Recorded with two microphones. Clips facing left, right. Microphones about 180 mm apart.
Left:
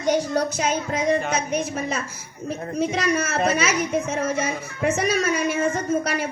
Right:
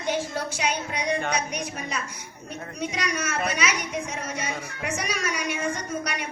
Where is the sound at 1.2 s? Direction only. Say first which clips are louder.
Left 2 dB; 5° left (ahead or behind).